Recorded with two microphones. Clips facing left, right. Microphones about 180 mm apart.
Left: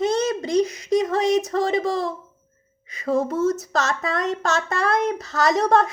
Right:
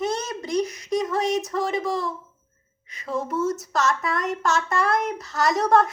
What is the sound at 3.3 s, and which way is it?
Speech, 90° left.